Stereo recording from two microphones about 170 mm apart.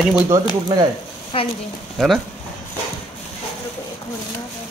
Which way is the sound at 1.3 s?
30° left (ahead or behind).